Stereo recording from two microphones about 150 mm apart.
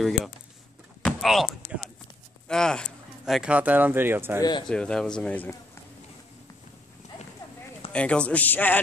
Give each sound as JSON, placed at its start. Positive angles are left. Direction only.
{"t": 1.0, "sound": "a sound", "side_deg": 0}
{"t": 2.4, "sound": "speech", "side_deg": 5}
{"t": 4.4, "sound": "speech", "side_deg": 30}
{"t": 4.6, "sound": "speech", "side_deg": 5}
{"t": 7.9, "sound": "speech", "side_deg": 5}